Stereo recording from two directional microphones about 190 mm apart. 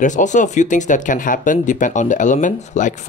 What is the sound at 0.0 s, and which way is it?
Speech, 40° left (ahead or behind).